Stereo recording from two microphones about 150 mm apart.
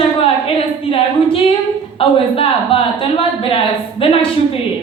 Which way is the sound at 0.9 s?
40° left (ahead or behind).